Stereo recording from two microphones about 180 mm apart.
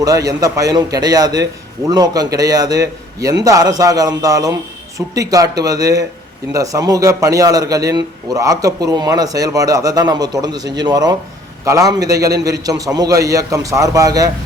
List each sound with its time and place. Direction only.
0.0 s a man's voice: 20° right (ahead or behind)